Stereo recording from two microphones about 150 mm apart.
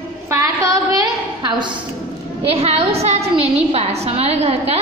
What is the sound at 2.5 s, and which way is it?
A woman's voice, 40° right (ahead or behind).